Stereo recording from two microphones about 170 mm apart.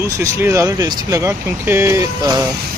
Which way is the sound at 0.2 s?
15° right (ahead or behind).